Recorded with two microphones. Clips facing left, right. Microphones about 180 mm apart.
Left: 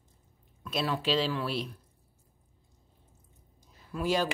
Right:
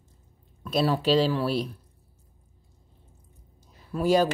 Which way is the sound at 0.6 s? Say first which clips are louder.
Right 7 dB; 35° right (ahead or behind).